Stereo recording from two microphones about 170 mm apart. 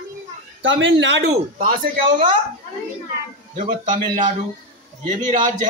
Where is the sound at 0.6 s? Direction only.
90° right; by 1.9 s 55° right (ahead or behind).